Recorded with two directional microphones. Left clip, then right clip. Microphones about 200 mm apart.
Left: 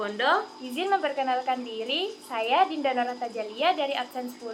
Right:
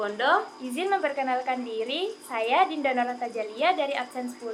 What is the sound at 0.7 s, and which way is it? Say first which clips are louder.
A woman's voice: even; 5° right (ahead or behind).